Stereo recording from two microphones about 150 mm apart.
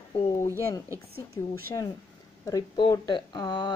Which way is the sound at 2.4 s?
25° left (ahead or behind).